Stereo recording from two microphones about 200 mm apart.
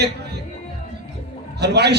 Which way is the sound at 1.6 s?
55° right (ahead or behind).